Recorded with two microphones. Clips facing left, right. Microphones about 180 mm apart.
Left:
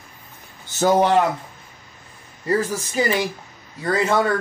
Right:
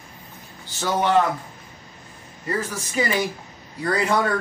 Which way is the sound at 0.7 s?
45° left (ahead or behind).